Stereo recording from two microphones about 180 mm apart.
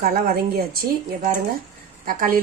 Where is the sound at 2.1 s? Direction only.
50° right (ahead or behind).